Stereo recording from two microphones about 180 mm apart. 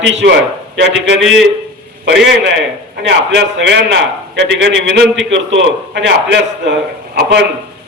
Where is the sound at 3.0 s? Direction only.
80° right.